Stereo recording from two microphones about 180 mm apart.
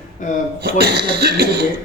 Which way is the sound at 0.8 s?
65° right (ahead or behind).